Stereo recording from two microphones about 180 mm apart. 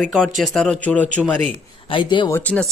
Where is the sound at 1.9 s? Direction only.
25° left (ahead or behind).